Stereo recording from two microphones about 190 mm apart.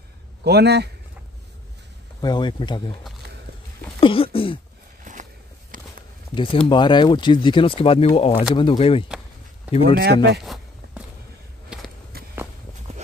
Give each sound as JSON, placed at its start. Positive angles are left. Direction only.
{"t": 0.4, "sound": "speech", "side_deg": -60}
{"t": 2.2, "sound": "speech", "side_deg": 25}
{"t": 4.0, "sound": "speech", "side_deg": 30}
{"t": 5.1, "sound": "walk", "side_deg": -40}
{"t": 6.3, "sound": "speech", "side_deg": 25}
{"t": 9.9, "sound": "speech", "side_deg": -60}
{"t": 10.4, "sound": "a sound", "side_deg": 0}